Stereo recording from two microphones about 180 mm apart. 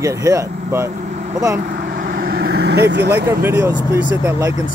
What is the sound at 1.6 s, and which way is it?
Vehicle, 55° right (ahead or behind).